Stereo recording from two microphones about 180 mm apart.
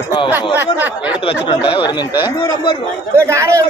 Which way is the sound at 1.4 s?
25° left (ahead or behind).